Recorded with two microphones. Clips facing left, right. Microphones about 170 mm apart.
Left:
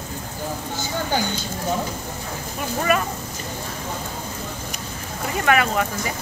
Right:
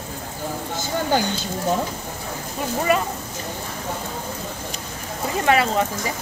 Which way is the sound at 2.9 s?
25° right (ahead or behind).